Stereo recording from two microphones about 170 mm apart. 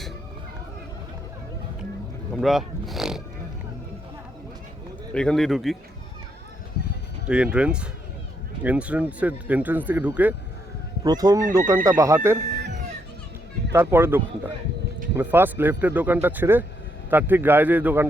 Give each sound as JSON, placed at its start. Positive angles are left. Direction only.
{"t": 2.3, "sound": "speech", "side_deg": 0}
{"t": 5.1, "sound": "speech", "side_deg": 5}
{"t": 7.3, "sound": "speech", "side_deg": -5}
{"t": 11.0, "sound": "speech", "side_deg": -20}
{"t": 12.5, "sound": "chicken", "side_deg": -80}
{"t": 13.7, "sound": "speech", "side_deg": -15}